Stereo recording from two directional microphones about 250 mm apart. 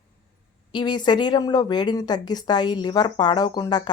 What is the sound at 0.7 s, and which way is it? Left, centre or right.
A woman's voice, centre.